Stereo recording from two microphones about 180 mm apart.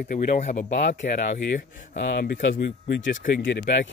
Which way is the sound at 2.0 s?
75° left (ahead or behind).